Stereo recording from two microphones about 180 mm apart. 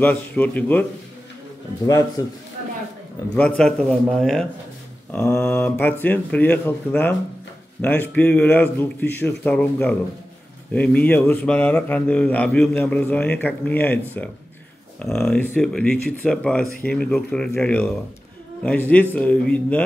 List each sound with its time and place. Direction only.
0.0 s speech: 10° left (ahead or behind)
1.9 s speech: 15° left (ahead or behind)
3.3 s speech: 5° left (ahead or behind)